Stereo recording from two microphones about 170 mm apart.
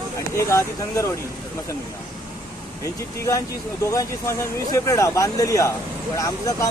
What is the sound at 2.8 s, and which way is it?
Speech, 15° left (ahead or behind).